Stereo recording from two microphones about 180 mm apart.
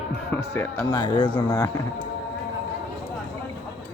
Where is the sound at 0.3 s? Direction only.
15° left (ahead or behind).